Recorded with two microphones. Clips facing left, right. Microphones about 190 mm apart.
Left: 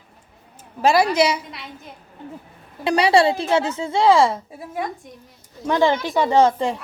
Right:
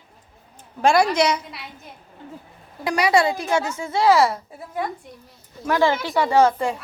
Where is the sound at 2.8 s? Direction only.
30° left (ahead or behind).